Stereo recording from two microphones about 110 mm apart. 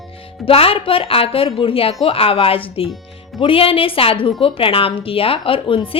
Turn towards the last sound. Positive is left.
turn(degrees=55)  # may be behind; listen again after turning